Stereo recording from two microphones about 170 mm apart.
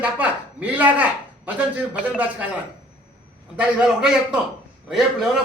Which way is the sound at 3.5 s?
5° right (ahead or behind).